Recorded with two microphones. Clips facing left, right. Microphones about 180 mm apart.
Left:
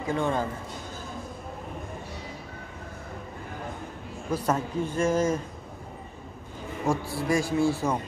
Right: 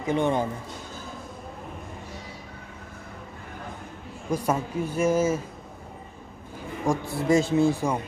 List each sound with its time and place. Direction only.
0.0 s speech: 20° right (ahead or behind)
4.3 s speech: 10° right (ahead or behind)
6.9 s speech: 20° right (ahead or behind)